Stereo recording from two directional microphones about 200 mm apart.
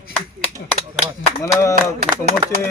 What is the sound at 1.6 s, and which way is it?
Speech, 15° left (ahead or behind).